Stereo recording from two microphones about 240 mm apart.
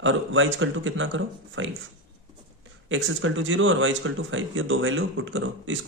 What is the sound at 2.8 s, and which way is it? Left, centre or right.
Speech, right.